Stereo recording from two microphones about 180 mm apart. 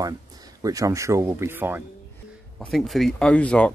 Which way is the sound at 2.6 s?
Centre (ahead or behind).